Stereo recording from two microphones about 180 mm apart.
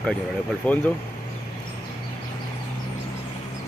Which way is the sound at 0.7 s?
5° left (ahead or behind).